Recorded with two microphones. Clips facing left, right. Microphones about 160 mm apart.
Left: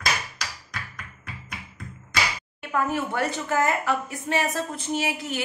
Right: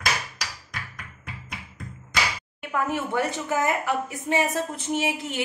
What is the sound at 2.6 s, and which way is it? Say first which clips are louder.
A woman's voice: left 1 dB; 15° right (ahead or behind).